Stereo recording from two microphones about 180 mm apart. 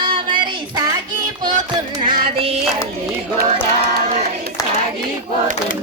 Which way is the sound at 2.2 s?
35° right (ahead or behind).